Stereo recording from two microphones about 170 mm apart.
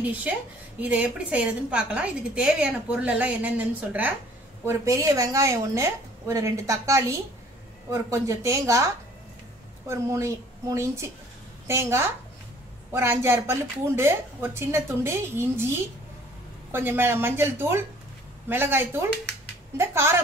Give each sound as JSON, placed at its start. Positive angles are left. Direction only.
{"t": 0.7, "sound": "a woman's voice", "side_deg": -10}
{"t": 16.7, "sound": "a woman's voice", "side_deg": -10}